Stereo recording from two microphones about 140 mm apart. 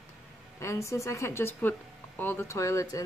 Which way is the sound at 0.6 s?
20° left (ahead or behind).